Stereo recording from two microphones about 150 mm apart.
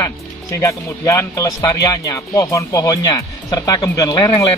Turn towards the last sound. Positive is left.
turn(degrees=20)  # may be behind; listen again after turning